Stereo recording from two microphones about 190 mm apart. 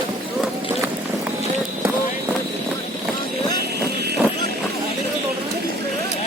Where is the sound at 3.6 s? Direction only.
60° right (ahead or behind).